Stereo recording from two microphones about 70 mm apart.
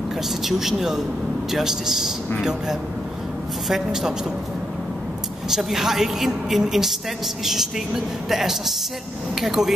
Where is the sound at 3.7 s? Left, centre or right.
Centre.